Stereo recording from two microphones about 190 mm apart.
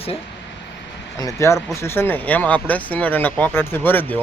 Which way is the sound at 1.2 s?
15° left (ahead or behind).